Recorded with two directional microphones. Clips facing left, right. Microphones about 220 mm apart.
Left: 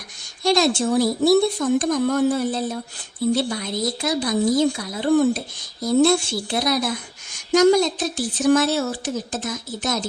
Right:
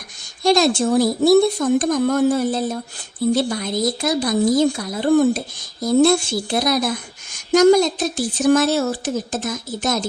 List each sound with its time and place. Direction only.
0.4 s a woman's voice: 45° right (ahead or behind)